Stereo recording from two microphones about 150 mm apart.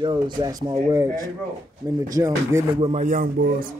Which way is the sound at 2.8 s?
50° right (ahead or behind).